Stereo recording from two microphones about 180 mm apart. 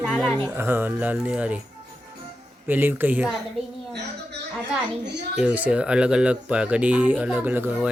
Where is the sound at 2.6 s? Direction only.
10° right (ahead or behind).